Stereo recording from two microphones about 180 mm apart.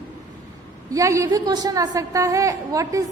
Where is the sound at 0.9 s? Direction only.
15° right (ahead or behind).